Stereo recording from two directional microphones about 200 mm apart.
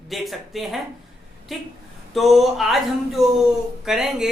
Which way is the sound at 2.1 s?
Centre (ahead or behind).